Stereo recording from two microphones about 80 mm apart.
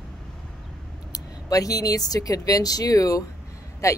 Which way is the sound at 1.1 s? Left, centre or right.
Left.